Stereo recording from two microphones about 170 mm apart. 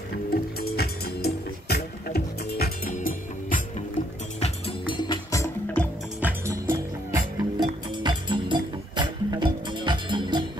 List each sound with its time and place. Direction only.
0.3 s music: 65° left (ahead or behind)
4.4 s music: 30° left (ahead or behind)
6.2 s music: 15° right (ahead or behind)